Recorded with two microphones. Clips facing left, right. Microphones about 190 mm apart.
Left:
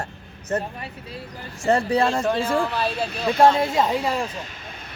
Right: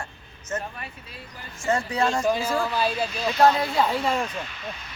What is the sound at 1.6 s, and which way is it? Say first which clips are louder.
Speech: left 4 dB; 35° left (ahead or behind).